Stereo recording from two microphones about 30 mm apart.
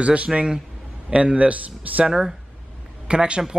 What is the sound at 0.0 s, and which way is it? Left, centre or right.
Speech, right.